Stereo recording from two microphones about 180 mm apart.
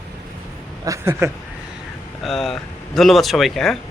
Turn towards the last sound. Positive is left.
turn(degrees=0)  # may be behind; listen again after turning